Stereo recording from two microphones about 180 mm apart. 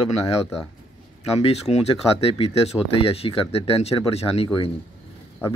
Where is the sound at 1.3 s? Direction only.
35° left (ahead or behind).